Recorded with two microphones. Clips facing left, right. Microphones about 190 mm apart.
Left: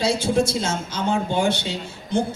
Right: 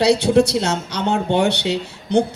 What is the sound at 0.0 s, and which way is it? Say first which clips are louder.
Speech: right 6 dB; 70° right (ahead or behind).